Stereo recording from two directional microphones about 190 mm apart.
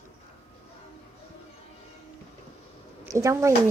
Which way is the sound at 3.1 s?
15° right (ahead or behind).